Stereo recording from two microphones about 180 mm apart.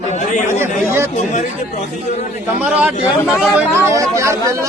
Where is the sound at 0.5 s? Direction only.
15° right (ahead or behind).